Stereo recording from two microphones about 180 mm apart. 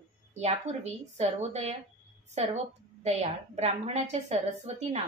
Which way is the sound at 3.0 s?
35° right (ahead or behind).